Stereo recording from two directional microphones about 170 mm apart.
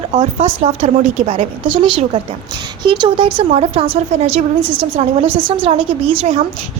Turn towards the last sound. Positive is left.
turn(degrees=-30)  # may be behind; listen again after turning